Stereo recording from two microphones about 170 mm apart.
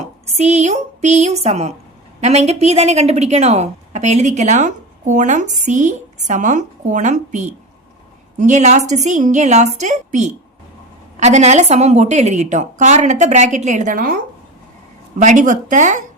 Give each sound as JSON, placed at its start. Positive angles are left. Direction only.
{"t": 0.0, "sound": "a woman's voice", "side_deg": -40}
{"t": 15.2, "sound": "a woman's voice", "side_deg": -45}